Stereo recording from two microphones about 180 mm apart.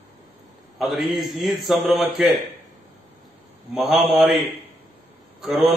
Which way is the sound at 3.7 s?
Centre (ahead or behind).